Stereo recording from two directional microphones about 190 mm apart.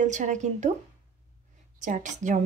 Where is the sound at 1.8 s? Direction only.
40° right (ahead or behind).